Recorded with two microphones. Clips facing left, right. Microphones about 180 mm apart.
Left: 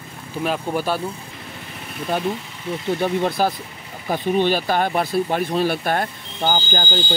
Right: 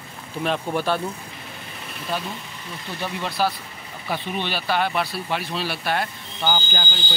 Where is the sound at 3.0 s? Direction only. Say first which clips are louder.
Left 3 dB; 50° left (ahead or behind).